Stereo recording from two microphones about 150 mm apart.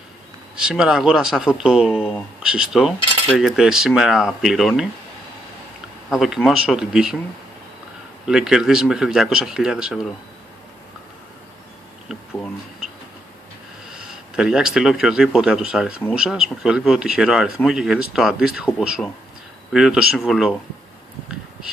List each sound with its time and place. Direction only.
0.6 s cutlery: 5° right (ahead or behind)
6.0 s cutlery: centre (ahead or behind)
8.3 s cutlery: 5° right (ahead or behind)
12.1 s a sound: 5° right (ahead or behind)
13.8 s speech: 5° right (ahead or behind)
16.1 s cutlery: 5° right (ahead or behind)